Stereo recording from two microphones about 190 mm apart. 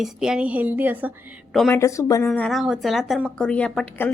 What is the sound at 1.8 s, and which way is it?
Speech, 15° left (ahead or behind).